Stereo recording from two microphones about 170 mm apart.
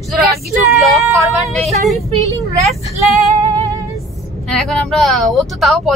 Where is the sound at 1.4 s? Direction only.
Centre (ahead or behind).